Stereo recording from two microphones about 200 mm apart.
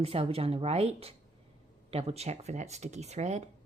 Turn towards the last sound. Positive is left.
turn(degrees=-35)  # may be behind; listen again after turning